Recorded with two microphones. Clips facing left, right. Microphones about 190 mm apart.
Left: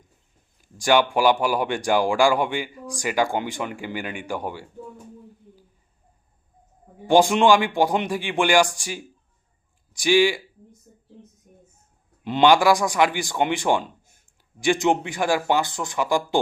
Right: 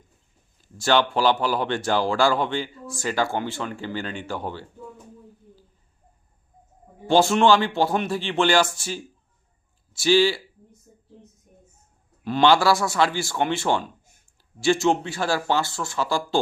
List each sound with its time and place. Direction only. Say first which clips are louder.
0.6 s speech: left 2 dB; 15° left (ahead or behind)
7.1 s speech: left 1 dB; 15° left (ahead or behind)
12.2 s speech: left 2 dB; 20° left (ahead or behind)